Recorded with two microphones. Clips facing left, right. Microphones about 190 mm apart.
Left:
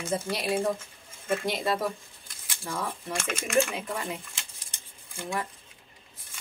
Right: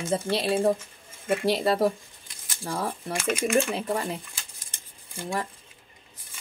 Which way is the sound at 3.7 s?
35° right (ahead or behind).